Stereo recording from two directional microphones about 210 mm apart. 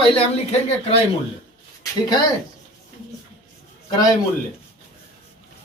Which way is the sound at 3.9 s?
15° left (ahead or behind).